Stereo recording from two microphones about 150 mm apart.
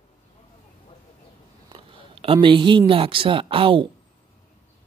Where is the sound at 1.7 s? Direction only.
35° right (ahead or behind).